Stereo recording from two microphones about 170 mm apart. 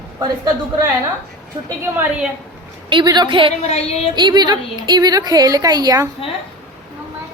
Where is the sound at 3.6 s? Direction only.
35° left (ahead or behind).